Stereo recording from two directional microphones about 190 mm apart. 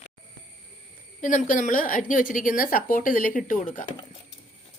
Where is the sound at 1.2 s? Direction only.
45° left (ahead or behind).